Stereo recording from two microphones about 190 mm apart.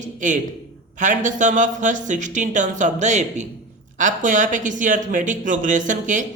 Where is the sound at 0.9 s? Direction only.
40° right (ahead or behind).